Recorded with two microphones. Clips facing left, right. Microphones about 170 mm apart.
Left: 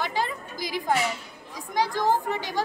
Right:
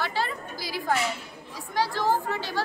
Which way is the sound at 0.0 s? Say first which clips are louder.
Left 1 dB; 15° left (ahead or behind).